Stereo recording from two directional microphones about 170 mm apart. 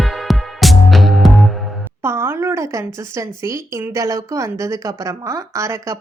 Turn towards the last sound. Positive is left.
turn(degrees=-15)  # may be behind; listen again after turning